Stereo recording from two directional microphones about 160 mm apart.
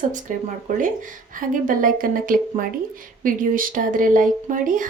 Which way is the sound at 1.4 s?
60° right (ahead or behind).